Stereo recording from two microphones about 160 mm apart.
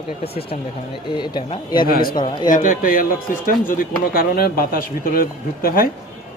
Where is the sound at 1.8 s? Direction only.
65° left (ahead or behind).